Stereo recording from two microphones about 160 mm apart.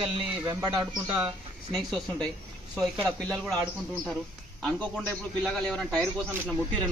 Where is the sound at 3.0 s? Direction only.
Centre (ahead or behind).